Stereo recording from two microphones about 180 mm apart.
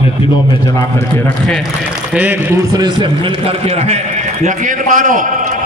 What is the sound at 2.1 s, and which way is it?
A man's voice, 10° right (ahead or behind).